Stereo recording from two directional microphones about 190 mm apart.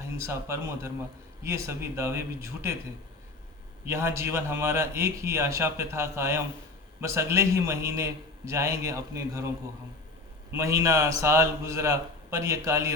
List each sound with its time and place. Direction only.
0.0 s a man's voice: 15° right (ahead or behind)
3.8 s a man's voice: 15° right (ahead or behind)
10.5 s a man's voice: 15° right (ahead or behind)